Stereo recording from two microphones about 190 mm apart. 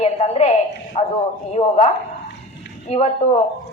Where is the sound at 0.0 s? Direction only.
35° left (ahead or behind).